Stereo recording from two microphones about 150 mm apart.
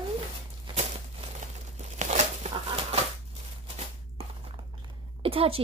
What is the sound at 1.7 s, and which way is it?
Crumpling, 50° right (ahead or behind).